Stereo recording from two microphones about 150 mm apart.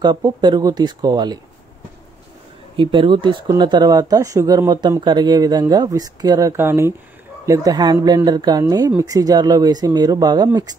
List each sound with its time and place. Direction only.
0.0 s speech: 30° right (ahead or behind)
2.8 s speech: 35° right (ahead or behind)